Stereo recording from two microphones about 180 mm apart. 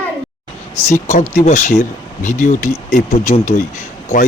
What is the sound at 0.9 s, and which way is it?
Speech, 40° left (ahead or behind).